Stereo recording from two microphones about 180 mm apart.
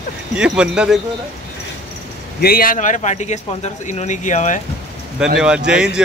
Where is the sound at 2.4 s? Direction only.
55° left (ahead or behind).